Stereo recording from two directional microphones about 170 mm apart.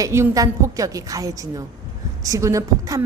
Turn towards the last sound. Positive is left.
turn(degrees=-20)  # may be behind; listen again after turning